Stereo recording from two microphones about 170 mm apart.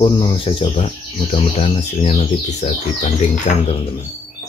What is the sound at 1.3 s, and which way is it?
Speech, 45° left (ahead or behind).